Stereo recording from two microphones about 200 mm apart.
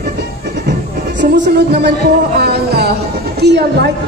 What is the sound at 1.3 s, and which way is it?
Speech, 55° right (ahead or behind).